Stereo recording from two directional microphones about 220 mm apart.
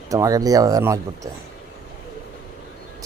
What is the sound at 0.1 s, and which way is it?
Speech, 15° right (ahead or behind).